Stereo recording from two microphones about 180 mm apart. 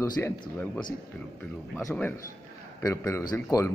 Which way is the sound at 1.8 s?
15° left (ahead or behind).